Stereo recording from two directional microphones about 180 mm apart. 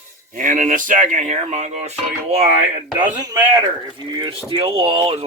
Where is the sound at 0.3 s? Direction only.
45° right (ahead or behind).